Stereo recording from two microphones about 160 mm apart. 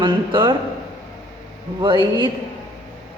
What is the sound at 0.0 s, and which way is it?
Speech, 30° right (ahead or behind).